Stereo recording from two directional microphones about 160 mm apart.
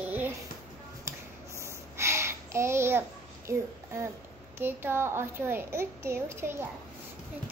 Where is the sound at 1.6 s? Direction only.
15° right (ahead or behind).